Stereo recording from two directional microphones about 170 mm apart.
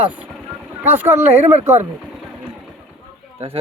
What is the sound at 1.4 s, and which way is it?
Speech, 15° right (ahead or behind).